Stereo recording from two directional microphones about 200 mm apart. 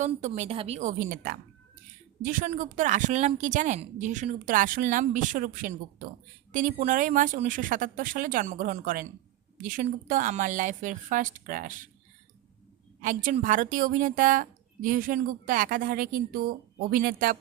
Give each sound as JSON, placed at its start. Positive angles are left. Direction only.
{"t": 0.0, "sound": "a woman's voice", "side_deg": -35}
{"t": 13.0, "sound": "speech", "side_deg": -40}